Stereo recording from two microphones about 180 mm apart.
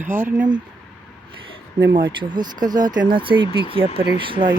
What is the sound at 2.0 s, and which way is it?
Speech, 25° right (ahead or behind).